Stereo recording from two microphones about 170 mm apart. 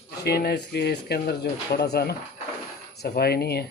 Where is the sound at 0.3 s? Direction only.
70° left (ahead or behind).